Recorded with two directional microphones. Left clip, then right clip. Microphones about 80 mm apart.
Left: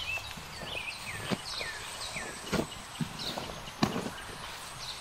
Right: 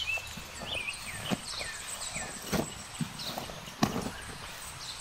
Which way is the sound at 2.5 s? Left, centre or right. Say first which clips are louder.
Even; centre.